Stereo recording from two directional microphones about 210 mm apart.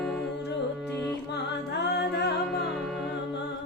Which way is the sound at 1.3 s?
50° left (ahead or behind).